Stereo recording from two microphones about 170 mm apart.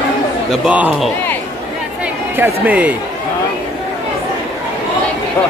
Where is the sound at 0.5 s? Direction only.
10° right (ahead or behind).